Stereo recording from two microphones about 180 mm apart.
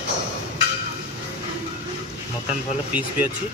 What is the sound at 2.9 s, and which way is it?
Speech, 10° right (ahead or behind).